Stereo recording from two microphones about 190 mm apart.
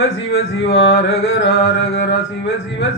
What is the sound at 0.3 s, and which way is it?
Music, 65° left (ahead or behind).